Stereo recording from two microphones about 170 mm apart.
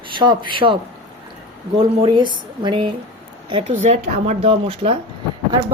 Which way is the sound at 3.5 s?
45° right (ahead or behind).